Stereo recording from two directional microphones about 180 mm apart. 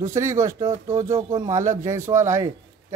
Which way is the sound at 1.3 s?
40° right (ahead or behind).